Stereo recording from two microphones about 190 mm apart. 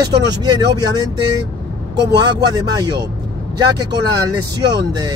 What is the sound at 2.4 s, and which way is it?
Speech, 20° right (ahead or behind).